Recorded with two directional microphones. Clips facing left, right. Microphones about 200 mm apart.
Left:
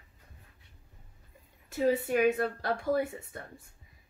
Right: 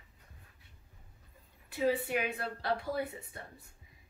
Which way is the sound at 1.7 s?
45° left (ahead or behind).